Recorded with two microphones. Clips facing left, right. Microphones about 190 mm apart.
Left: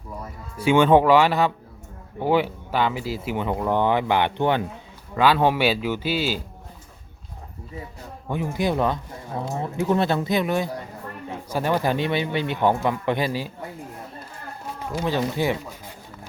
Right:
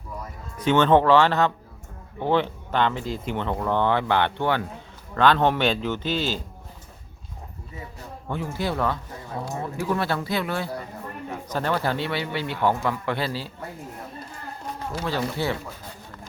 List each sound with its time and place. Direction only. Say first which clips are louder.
0.6 s speech: left 2 dB; 10° left (ahead or behind)
8.3 s speech: left 4 dB; 15° left (ahead or behind)
14.9 s speech: left 4 dB; 15° left (ahead or behind)